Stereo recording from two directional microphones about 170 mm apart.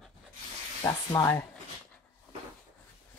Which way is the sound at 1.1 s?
20° left (ahead or behind).